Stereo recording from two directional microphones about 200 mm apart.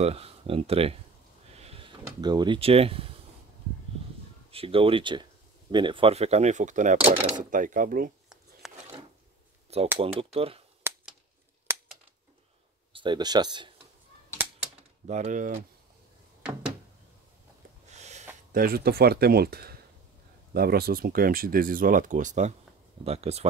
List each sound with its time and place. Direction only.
0.0 s speech: 30° right (ahead or behind)
1.5 s a sound: 30° right (ahead or behind)
2.0 s speech: 20° right (ahead or behind)
4.5 s speech: 30° right (ahead or behind)
7.5 s speech: 40° right (ahead or behind)
8.6 s a sound: centre (ahead or behind)
9.9 s speech: 30° right (ahead or behind)
10.9 s a sound: 10° right (ahead or behind)
12.9 s speech: 25° right (ahead or behind)
15.0 s speech: 35° right (ahead or behind)
17.9 s a sound: 35° right (ahead or behind)
18.5 s speech: 50° right (ahead or behind); by 23.4 s 30° right (ahead or behind)